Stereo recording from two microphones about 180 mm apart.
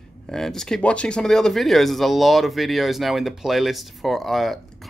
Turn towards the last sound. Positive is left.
turn(degrees=0)  # may be behind; listen again after turning